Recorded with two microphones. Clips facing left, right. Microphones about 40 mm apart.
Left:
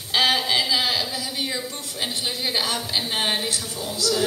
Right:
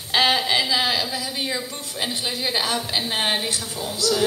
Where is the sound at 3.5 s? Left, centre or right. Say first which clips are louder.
Right 1 dB; right.